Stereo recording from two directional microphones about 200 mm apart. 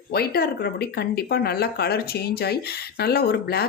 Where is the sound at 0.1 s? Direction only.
50° left (ahead or behind).